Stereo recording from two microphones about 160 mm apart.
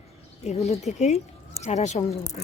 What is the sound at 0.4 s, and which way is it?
Speech, 45° left (ahead or behind).